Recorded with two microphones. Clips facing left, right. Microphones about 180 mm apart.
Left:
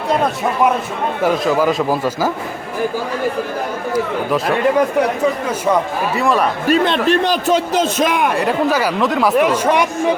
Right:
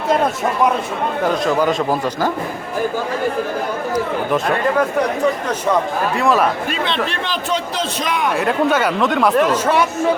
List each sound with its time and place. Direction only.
1.2 s speech: 5° left (ahead or behind)
6.1 s speech: centre (ahead or behind)
6.7 s a man's voice: 45° left (ahead or behind)
8.3 s speech: centre (ahead or behind)